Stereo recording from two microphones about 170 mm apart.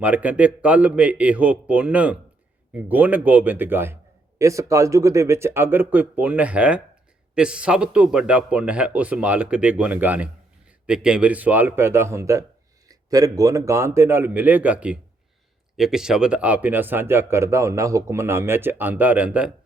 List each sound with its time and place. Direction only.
0.0 s a man's voice: 10° right (ahead or behind)